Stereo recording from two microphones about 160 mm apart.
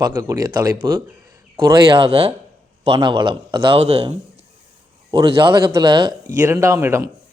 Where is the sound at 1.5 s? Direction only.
35° right (ahead or behind).